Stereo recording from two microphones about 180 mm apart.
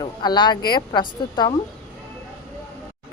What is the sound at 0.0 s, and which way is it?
Speech, 25° left (ahead or behind).